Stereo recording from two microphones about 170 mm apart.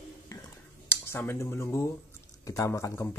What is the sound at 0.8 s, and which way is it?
Speech, 15° left (ahead or behind).